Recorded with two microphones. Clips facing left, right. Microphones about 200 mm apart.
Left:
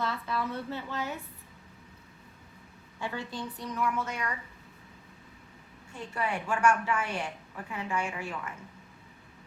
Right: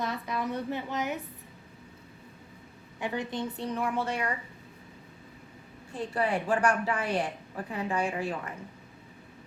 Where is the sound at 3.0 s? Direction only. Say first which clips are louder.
Right 4 dB; 15° right (ahead or behind).